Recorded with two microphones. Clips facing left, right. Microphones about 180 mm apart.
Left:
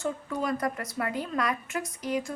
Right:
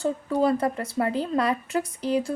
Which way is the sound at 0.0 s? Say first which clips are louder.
Right 7 dB; 30° right (ahead or behind).